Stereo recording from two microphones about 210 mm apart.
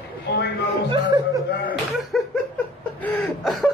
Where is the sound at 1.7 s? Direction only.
Centre (ahead or behind).